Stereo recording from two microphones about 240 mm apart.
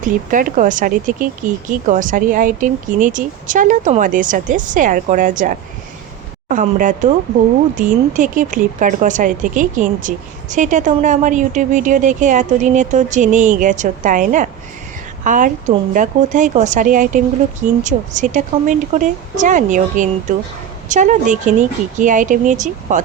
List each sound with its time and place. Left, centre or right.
0.0 s speech: right